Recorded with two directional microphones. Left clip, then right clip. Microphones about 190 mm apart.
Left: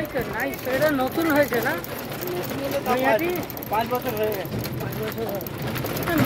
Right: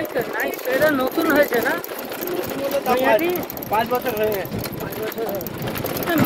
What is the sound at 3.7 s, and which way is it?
Speech, 50° right (ahead or behind).